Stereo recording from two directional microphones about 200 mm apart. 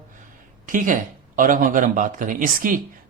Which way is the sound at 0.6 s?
40° right (ahead or behind).